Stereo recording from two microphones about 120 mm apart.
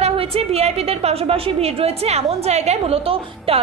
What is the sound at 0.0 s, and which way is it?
A woman's voice, 55° right (ahead or behind).